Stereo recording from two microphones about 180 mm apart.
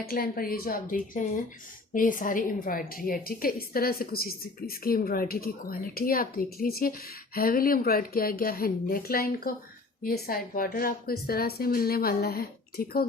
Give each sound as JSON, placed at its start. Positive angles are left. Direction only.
{"t": 0.0, "sound": "a woman's voice", "side_deg": 55}